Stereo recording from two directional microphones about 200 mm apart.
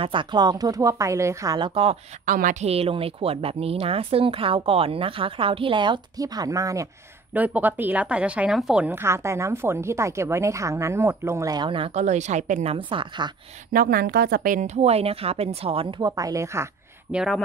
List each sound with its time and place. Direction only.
0.0 s speech: 25° right (ahead or behind)
2.2 s a woman's voice: 40° right (ahead or behind)
12.7 s speech: 25° right (ahead or behind)
13.7 s speech: 50° right (ahead or behind); by 16.6 s 15° right (ahead or behind)
17.1 s speech: 5° right (ahead or behind)